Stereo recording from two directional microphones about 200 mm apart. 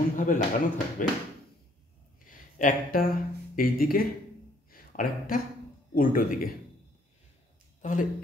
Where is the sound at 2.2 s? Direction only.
45° left (ahead or behind).